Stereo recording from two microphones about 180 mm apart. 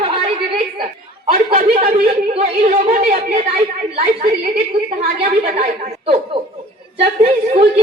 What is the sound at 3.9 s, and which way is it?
A woman's voice, 40° right (ahead or behind).